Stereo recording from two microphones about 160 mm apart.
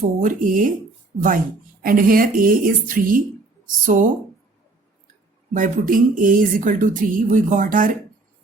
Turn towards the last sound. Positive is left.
turn(degrees=-55)  # may be behind; listen again after turning